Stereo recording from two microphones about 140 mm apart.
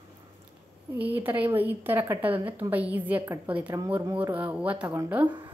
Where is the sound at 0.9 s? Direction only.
10° right (ahead or behind).